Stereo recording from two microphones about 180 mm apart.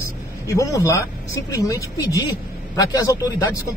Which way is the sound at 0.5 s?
15° left (ahead or behind).